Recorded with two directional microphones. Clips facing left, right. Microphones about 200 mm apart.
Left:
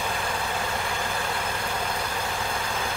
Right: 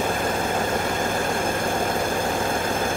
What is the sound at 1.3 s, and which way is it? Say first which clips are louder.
Vehicle: right 7 dB; 45° right (ahead or behind).